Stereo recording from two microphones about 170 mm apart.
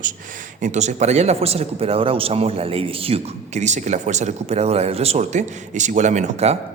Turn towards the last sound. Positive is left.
turn(degrees=-40)  # may be behind; listen again after turning